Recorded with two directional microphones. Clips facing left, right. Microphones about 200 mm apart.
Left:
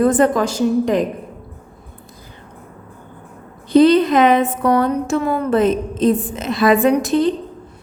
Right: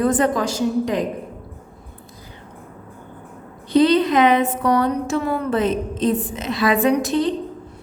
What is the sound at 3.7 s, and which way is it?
A woman's voice, 50° left (ahead or behind).